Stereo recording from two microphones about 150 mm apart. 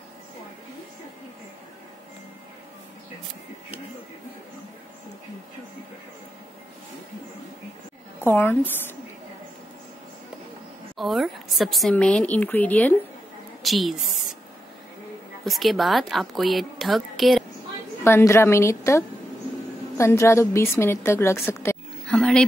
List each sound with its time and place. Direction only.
8.2 s a woman's voice: 15° left (ahead or behind)
11.0 s a woman's voice: centre (ahead or behind)
13.6 s a woman's voice: centre (ahead or behind)
15.4 s a woman's voice: centre (ahead or behind)
18.0 s a woman's voice: 15° left (ahead or behind)
22.0 s roaring cats: 5° left (ahead or behind)